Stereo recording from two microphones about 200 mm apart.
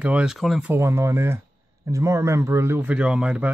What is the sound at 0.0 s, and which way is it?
A man's voice, 5° right (ahead or behind).